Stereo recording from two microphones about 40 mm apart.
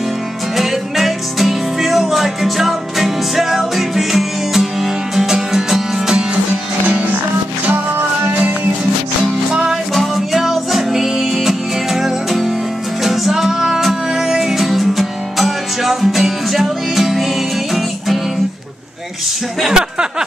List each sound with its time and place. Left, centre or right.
0.6 s music: centre
7.7 s music: right
9.5 s music: centre
19.7 s a sound: centre